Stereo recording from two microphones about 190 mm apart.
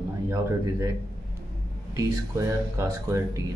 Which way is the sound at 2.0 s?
15° right (ahead or behind).